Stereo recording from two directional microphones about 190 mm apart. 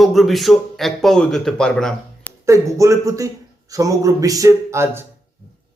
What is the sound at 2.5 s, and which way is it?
Speech, 15° right (ahead or behind).